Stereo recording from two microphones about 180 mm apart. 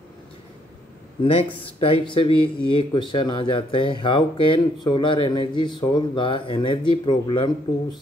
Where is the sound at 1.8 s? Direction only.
30° left (ahead or behind).